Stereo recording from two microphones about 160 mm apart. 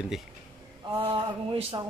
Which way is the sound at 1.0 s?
35° right (ahead or behind).